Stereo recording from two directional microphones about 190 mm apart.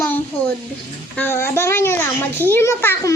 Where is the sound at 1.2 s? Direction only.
10° left (ahead or behind).